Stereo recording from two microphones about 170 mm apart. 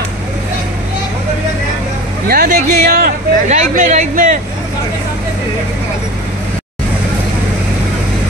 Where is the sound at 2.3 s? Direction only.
60° right (ahead or behind).